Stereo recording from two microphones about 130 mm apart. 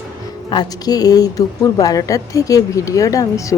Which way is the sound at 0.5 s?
30° left (ahead or behind).